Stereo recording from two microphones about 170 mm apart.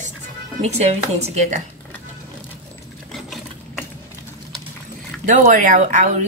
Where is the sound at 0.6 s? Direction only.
40° right (ahead or behind).